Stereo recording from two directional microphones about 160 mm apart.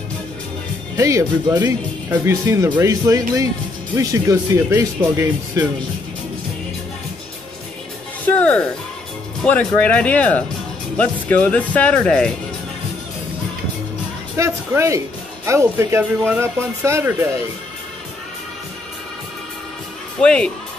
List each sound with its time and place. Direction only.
0.9 s speech: 20° right (ahead or behind)
8.3 s speech: 10° left (ahead or behind)
14.3 s speech: 15° right (ahead or behind)
20.2 s speech: 5° left (ahead or behind)